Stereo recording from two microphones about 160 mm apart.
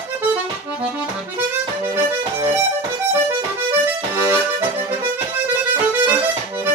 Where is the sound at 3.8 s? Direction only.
15° right (ahead or behind).